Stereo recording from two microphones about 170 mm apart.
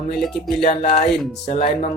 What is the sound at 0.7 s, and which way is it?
Speech, 40° left (ahead or behind).